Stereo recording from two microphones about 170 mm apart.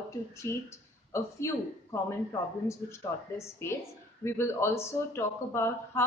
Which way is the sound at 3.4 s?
15° left (ahead or behind).